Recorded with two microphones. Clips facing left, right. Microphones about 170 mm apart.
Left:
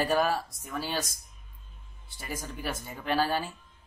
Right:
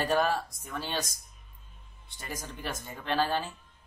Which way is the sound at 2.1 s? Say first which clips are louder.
Left 2 dB; 5° left (ahead or behind).